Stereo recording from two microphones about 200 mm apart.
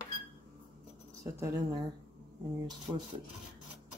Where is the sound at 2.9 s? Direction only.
10° right (ahead or behind).